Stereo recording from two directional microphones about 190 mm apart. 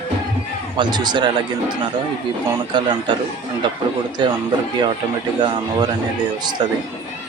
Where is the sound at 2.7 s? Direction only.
25° right (ahead or behind).